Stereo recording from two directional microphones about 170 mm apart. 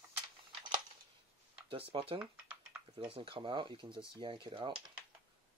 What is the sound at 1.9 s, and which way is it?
Speech, 30° right (ahead or behind).